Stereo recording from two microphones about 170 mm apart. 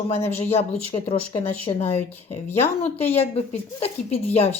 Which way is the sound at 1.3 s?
35° left (ahead or behind).